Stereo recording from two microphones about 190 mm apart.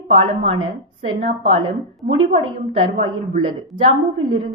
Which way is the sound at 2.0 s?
30° right (ahead or behind).